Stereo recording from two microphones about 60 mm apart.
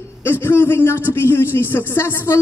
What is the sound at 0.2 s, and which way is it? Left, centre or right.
A man's voice, left.